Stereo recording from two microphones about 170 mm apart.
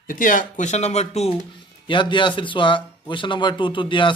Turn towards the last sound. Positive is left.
turn(degrees=30)  # may be behind; listen again after turning